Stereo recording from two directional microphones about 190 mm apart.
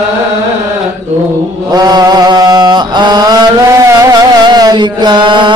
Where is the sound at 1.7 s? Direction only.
20° right (ahead or behind).